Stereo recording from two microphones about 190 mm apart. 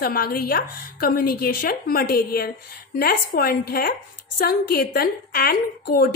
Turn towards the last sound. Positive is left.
turn(degrees=55)  # may be behind; listen again after turning